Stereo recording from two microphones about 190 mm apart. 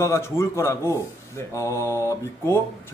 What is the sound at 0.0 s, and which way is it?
Speech, 15° left (ahead or behind).